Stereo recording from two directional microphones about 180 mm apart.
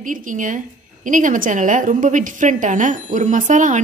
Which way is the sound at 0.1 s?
45° right (ahead or behind).